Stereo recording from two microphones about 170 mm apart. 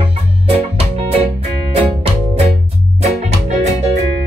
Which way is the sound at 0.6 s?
35° right (ahead or behind).